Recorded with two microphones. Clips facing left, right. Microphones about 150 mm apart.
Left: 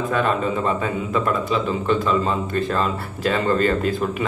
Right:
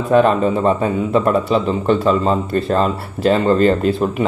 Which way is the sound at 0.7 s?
35° right (ahead or behind).